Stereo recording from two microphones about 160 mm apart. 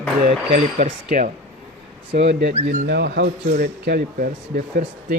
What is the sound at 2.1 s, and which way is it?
A man's voice, 90° right.